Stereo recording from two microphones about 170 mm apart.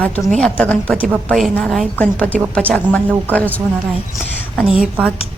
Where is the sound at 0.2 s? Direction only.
5° left (ahead or behind).